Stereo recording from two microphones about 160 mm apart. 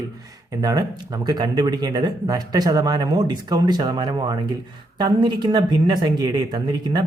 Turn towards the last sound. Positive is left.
turn(degrees=-25)  # may be behind; listen again after turning